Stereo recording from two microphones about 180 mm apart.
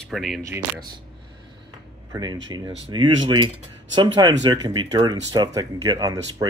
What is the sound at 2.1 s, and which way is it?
Speech, 20° right (ahead or behind).